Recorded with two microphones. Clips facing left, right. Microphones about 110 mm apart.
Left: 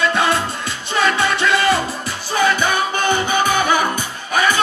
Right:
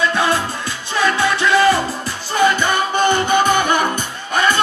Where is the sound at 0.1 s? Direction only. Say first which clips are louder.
Even; 20° left (ahead or behind).